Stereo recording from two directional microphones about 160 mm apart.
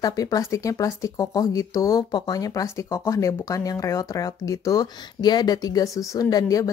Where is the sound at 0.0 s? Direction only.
20° left (ahead or behind).